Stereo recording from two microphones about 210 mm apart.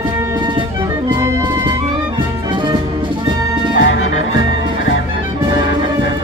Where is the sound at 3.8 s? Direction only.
65° left (ahead or behind).